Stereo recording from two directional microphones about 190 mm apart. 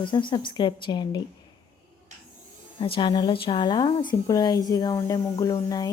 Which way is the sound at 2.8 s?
25° left (ahead or behind).